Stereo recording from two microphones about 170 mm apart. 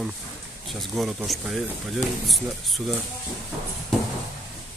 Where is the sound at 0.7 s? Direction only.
Centre (ahead or behind).